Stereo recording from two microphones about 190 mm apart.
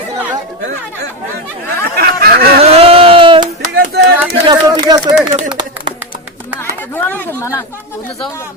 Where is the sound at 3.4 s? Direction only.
45° right (ahead or behind).